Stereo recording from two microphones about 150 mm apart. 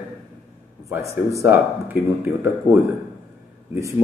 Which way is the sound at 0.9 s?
20° right (ahead or behind).